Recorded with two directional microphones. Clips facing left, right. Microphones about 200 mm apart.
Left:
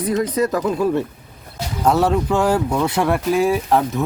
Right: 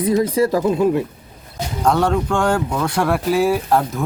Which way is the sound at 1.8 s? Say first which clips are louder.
Left 1 dB; 5° left (ahead or behind).